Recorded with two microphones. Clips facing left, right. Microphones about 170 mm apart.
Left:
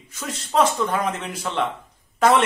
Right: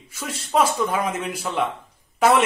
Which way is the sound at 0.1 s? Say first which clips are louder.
Right 1 dB; 10° right (ahead or behind).